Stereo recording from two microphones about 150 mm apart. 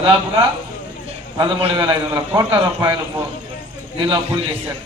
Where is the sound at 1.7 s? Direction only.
25° right (ahead or behind).